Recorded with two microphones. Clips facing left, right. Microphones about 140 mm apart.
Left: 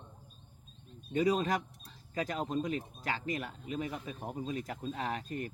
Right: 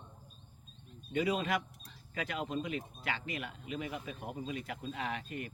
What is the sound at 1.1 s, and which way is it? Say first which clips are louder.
Speech: left 3 dB; 40° left (ahead or behind).